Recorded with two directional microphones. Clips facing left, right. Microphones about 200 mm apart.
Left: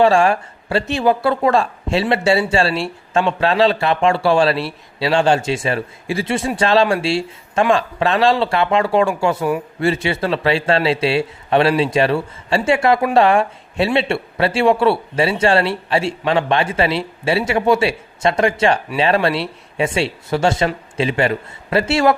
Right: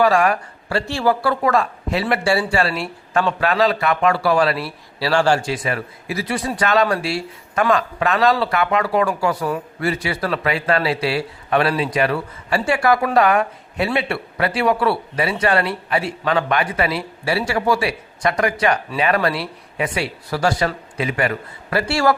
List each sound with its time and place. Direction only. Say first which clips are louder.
0.0 s speech: left 3 dB; 30° left (ahead or behind)